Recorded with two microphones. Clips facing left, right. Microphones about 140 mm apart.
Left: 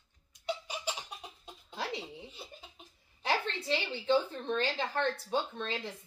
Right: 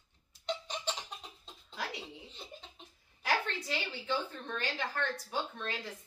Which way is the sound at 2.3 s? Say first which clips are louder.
Even; 10° left (ahead or behind).